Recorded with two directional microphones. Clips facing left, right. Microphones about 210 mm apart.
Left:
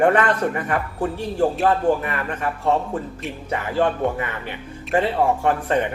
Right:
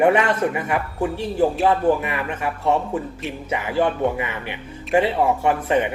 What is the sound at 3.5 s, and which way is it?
Speech, 10° right (ahead or behind).